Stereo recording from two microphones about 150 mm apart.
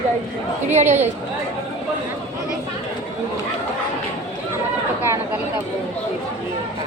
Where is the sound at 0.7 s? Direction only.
50° right (ahead or behind).